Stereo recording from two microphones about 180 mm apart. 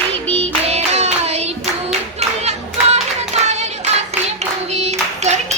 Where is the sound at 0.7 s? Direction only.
35° right (ahead or behind).